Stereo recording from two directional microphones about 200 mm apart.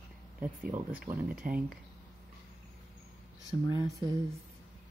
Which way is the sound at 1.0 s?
45° right (ahead or behind).